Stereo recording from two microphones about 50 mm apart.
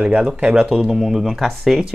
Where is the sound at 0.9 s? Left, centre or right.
Centre.